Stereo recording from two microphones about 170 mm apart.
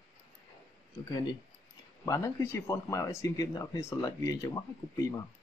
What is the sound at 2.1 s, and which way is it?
Speech, 15° left (ahead or behind).